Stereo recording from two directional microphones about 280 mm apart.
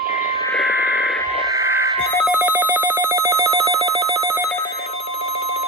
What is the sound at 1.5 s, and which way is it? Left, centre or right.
Telephone bell ringing, centre.